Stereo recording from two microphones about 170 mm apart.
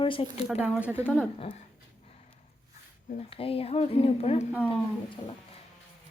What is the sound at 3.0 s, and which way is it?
Speech, 35° left (ahead or behind).